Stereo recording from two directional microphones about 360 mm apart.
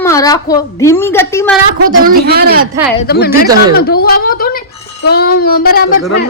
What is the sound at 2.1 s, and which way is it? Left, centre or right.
Speech, right.